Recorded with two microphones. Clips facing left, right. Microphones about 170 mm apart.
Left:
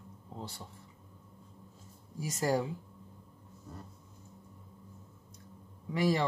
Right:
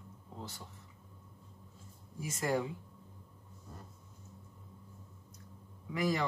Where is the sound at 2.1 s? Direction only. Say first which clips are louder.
Left 3 dB; 35° left (ahead or behind).